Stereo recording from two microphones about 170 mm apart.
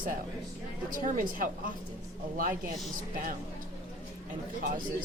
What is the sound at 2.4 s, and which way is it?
Speech, 55° right (ahead or behind).